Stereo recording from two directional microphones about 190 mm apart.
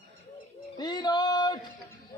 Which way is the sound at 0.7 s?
20° left (ahead or behind).